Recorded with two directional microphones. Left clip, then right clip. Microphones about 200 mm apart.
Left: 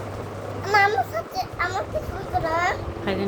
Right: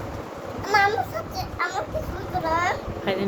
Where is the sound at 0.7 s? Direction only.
35° left (ahead or behind).